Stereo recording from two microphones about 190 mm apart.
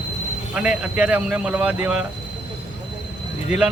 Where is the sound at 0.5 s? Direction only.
5° right (ahead or behind).